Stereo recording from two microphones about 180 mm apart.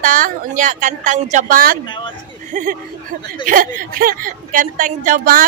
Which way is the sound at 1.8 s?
25° left (ahead or behind).